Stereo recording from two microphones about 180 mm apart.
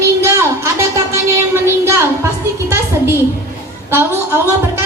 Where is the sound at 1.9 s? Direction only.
15° right (ahead or behind).